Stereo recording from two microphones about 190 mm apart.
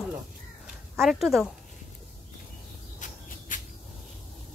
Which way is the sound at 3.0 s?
45° left (ahead or behind).